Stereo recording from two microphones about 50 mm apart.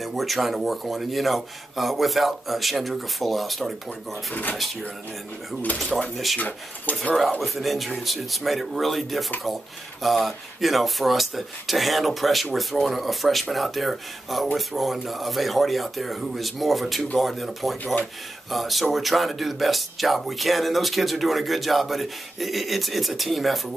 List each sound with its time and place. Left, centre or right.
0.0 s speech: centre
4.3 s speech: left
6.1 s speech: centre
6.9 s speech: left
7.3 s speech: centre